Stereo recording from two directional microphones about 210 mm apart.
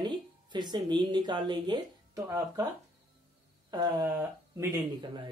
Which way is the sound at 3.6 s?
20° right (ahead or behind).